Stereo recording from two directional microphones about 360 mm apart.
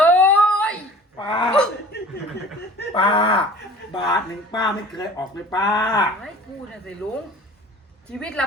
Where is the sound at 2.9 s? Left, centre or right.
Centre.